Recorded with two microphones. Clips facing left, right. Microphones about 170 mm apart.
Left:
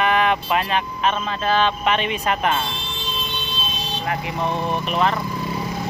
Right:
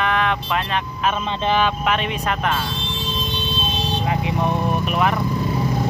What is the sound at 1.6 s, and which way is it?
Speech, centre (ahead or behind).